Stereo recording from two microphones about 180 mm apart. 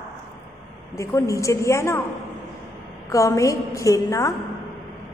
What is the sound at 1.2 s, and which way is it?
Speech, 15° left (ahead or behind).